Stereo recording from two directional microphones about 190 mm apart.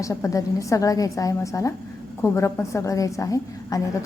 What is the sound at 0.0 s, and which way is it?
A woman's voice, 15° left (ahead or behind).